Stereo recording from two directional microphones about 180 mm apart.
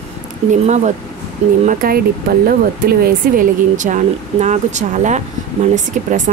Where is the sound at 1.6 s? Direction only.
55° right (ahead or behind).